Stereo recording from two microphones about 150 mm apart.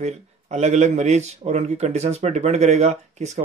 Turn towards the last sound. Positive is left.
turn(degrees=-50)  # may be behind; listen again after turning